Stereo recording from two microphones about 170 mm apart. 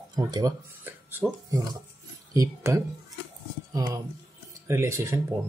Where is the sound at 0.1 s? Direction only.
20° right (ahead or behind).